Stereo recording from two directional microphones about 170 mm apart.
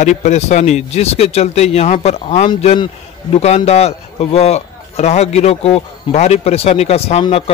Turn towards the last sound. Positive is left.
turn(degrees=35)  # may be behind; listen again after turning